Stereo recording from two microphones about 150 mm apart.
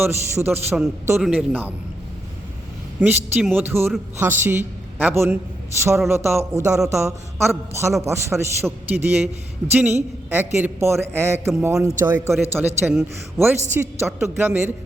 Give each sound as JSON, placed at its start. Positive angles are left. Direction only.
{"t": 0.0, "sound": "a woman's voice", "side_deg": -15}
{"t": 1.2, "sound": "a man's voice", "side_deg": -5}
{"t": 3.0, "sound": "a woman's voice", "side_deg": -10}
{"t": 12.8, "sound": "a man's voice", "side_deg": -5}